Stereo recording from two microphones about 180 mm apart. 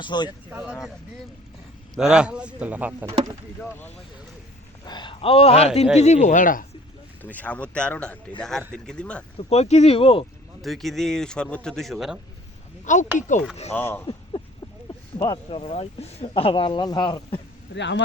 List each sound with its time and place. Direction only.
0.0 s speech: 25° left (ahead or behind)
0.5 s a man's voice: 5° right (ahead or behind)
2.0 s a man's voice: 5° right (ahead or behind)
3.6 s speech: 10° left (ahead or behind)
4.9 s a man's voice: 25° left (ahead or behind); by 6.7 s 50° left (ahead or behind)
7.2 s a man's voice: 10° left (ahead or behind)
9.4 s a man's voice: 35° left (ahead or behind)
10.6 s a man's voice: centre (ahead or behind)
12.8 s speech: 45° left (ahead or behind)
13.7 s speech: 10° left (ahead or behind)
14.3 s a sound: 25° left (ahead or behind)
15.2 s speech: 25° left (ahead or behind)
17.7 s speech: 80° left